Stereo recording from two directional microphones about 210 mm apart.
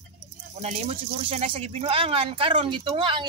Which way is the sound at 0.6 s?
30° right (ahead or behind).